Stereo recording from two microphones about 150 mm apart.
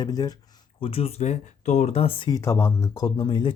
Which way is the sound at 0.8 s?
40° left (ahead or behind).